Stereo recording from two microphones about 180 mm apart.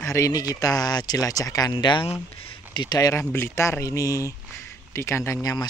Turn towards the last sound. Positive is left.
turn(degrees=20)  # may be behind; listen again after turning